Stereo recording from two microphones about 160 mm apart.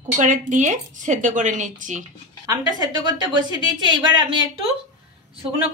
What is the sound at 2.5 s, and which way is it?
A woman's voice, 25° right (ahead or behind).